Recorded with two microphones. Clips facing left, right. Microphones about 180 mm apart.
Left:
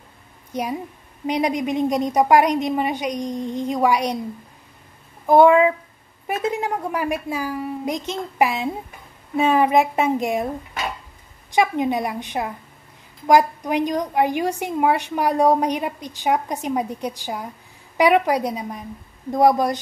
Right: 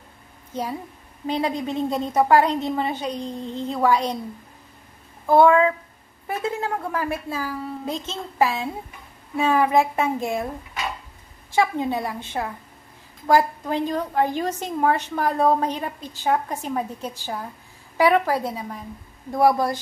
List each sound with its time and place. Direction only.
0.5 s a woman's voice: 15° left (ahead or behind)
5.2 s a woman's voice: 15° left (ahead or behind)
9.4 s child singing: 20° left (ahead or behind)
11.5 s a woman's voice: 15° left (ahead or behind)
19.3 s child singing: 20° left (ahead or behind)